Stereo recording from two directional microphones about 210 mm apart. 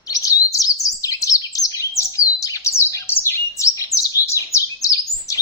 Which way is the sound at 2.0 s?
15° left (ahead or behind).